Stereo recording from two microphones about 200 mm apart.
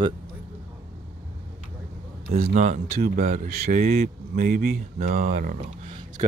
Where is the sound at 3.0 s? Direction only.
50° right (ahead or behind).